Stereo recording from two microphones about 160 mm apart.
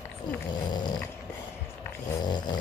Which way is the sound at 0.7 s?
25° left (ahead or behind).